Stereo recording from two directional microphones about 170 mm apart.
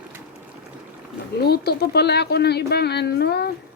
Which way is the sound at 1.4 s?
70° left (ahead or behind).